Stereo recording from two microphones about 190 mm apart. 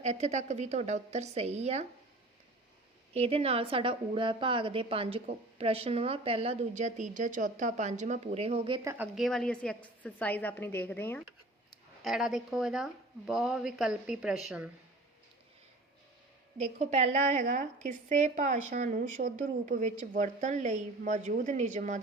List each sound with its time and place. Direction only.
0.0 s a woman's voice: 35° right (ahead or behind)
3.1 s a woman's voice: 30° right (ahead or behind); by 9.0 s 15° right (ahead or behind)
9.1 s a woman's voice: centre (ahead or behind)
12.0 s speech: centre (ahead or behind)
16.7 s a woman's voice: 35° right (ahead or behind)